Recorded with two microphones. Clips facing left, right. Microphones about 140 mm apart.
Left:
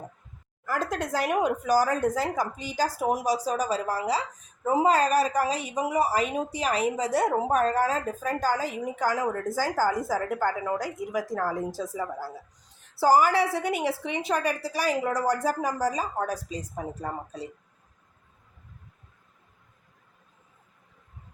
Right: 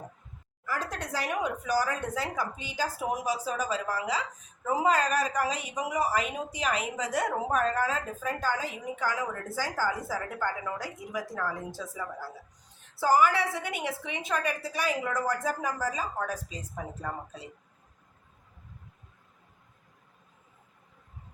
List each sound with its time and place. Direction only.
0.6 s a woman's voice: 50° left (ahead or behind)